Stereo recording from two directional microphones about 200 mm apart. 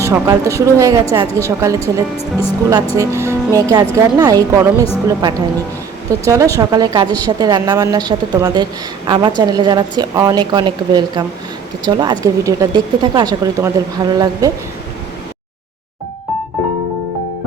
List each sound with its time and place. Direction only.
0.0 s speech: 15° right (ahead or behind)
1.8 s speech: 30° left (ahead or behind)
3.0 s speech: 15° right (ahead or behind)
6.1 s speech: 15° right (ahead or behind)